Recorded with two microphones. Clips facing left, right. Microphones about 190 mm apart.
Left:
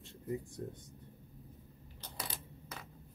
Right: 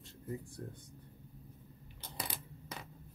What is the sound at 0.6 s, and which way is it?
Speech, 25° left (ahead or behind).